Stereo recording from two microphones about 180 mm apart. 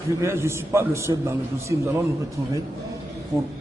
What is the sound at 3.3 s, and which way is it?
Speech, 15° right (ahead or behind).